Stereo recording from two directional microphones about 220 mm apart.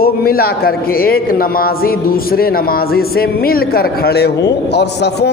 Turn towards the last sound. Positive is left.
turn(degrees=50)  # may be behind; listen again after turning